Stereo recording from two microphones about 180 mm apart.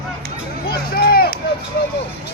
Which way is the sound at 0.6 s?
60° left (ahead or behind).